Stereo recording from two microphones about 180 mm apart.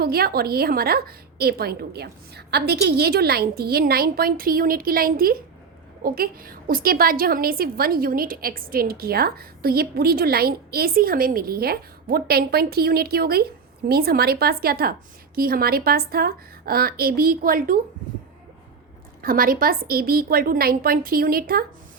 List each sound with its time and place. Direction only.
0.0 s a woman's voice: 60° right (ahead or behind)
19.2 s a woman's voice: 55° right (ahead or behind)